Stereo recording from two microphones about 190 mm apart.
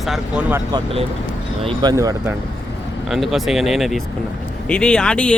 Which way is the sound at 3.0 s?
Centre (ahead or behind).